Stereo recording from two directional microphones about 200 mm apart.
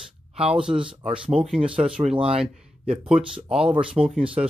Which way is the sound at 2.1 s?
30° right (ahead or behind).